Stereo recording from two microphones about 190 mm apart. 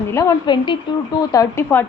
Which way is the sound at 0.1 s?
15° left (ahead or behind).